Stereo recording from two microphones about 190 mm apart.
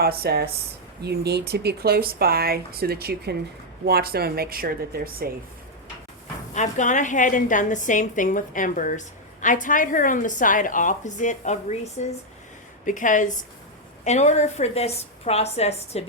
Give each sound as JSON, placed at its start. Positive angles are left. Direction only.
{"t": 0.0, "sound": "a woman's voice", "side_deg": -55}
{"t": 6.5, "sound": "a woman's voice", "side_deg": 40}